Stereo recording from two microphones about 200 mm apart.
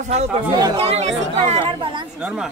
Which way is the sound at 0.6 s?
25° right (ahead or behind).